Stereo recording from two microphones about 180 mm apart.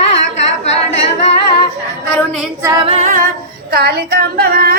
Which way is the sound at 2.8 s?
35° right (ahead or behind).